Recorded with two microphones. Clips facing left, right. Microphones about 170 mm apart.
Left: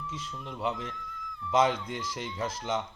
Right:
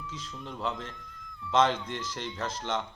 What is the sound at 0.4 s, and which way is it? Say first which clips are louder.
A man's voice: left 1 dB; 5° left (ahead or behind).